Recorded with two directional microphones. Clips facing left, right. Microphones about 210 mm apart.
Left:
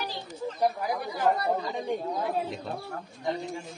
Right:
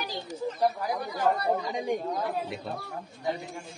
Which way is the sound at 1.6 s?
15° right (ahead or behind).